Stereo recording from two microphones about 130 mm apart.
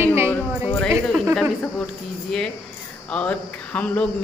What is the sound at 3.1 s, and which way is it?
Speech, 10° left (ahead or behind).